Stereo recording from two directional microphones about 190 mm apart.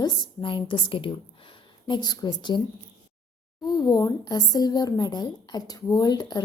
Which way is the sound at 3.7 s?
20° left (ahead or behind).